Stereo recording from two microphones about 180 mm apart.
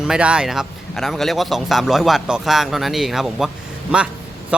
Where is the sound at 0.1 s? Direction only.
5° right (ahead or behind).